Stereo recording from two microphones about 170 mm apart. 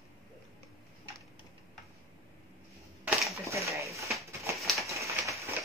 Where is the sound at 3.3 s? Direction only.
15° right (ahead or behind).